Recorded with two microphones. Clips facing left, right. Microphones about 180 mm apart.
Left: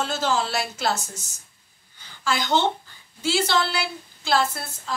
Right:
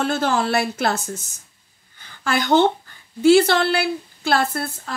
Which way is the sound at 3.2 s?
55° right (ahead or behind).